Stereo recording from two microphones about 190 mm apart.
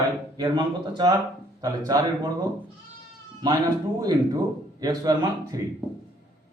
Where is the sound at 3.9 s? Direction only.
20° right (ahead or behind).